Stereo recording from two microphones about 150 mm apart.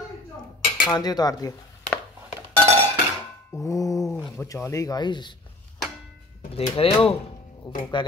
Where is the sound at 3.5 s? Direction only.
20° left (ahead or behind).